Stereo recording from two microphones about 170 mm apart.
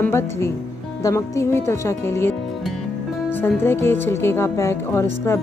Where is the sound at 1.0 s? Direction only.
20° left (ahead or behind).